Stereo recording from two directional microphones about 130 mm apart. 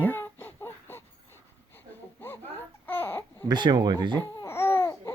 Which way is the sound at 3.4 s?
35° right (ahead or behind).